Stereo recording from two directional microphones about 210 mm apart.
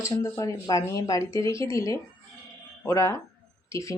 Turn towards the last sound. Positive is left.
turn(degrees=15)  # may be behind; listen again after turning